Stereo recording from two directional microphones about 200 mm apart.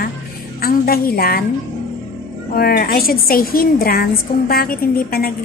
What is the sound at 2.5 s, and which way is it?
A woman's voice, 50° left (ahead or behind).